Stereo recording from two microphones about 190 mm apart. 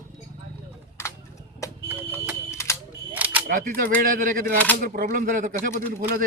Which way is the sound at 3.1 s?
10° right (ahead or behind).